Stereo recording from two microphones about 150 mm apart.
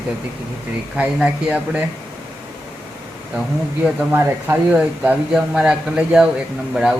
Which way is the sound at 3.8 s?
10° right (ahead or behind).